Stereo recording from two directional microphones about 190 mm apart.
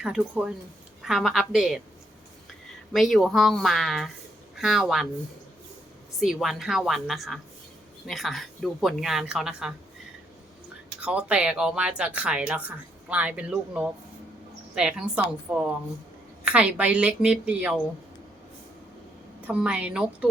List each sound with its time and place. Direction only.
0.0 s speech: 5° right (ahead or behind)
2.9 s speech: centre (ahead or behind)
6.1 s speech: centre (ahead or behind)
11.0 s a woman's voice: 5° right (ahead or behind)
19.5 s speech: 5° right (ahead or behind)